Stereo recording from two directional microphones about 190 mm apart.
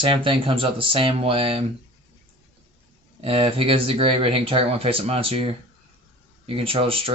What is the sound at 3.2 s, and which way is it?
Speech, 30° right (ahead or behind).